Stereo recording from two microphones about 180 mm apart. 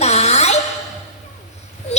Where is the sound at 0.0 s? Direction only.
35° left (ahead or behind).